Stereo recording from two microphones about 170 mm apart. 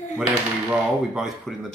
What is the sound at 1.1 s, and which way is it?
Speech, centre (ahead or behind).